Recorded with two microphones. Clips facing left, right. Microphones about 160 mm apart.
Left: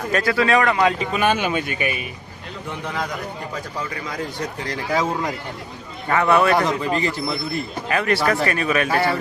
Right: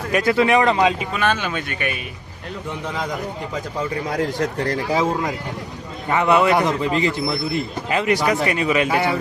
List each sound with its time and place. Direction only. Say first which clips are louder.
0.1 s a man's voice: right 2 dB; 20° right (ahead or behind)
1.2 s speech: left 2 dB; 10° left (ahead or behind)
4.1 s speech: right 7 dB; 70° right (ahead or behind)
6.1 s a man's voice: even; 20° right (ahead or behind)